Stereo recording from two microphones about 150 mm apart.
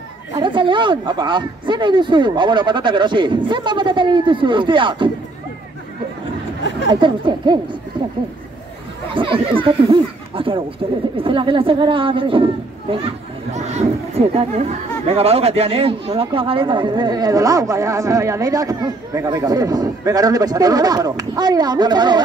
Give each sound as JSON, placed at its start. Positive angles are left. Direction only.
{"t": 0.3, "sound": "speech", "side_deg": -30}
{"t": 6.9, "sound": "speech", "side_deg": -30}
{"t": 9.1, "sound": "speech", "side_deg": -35}
{"t": 13.6, "sound": "speech", "side_deg": -45}